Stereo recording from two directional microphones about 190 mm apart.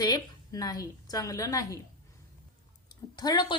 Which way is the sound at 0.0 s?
20° left (ahead or behind).